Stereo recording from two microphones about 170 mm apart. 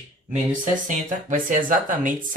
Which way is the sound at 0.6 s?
50° right (ahead or behind).